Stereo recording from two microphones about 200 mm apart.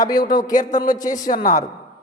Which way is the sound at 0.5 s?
40° left (ahead or behind).